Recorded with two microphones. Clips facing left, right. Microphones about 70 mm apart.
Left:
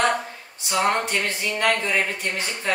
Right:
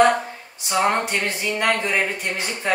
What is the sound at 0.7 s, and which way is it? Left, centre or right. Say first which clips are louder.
Speech: right 2 dB; centre.